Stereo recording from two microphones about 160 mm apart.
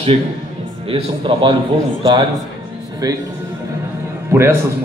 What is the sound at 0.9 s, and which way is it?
Speech, 30° right (ahead or behind).